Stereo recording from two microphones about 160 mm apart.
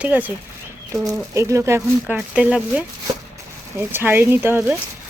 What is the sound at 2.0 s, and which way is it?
Speech, 5° right (ahead or behind).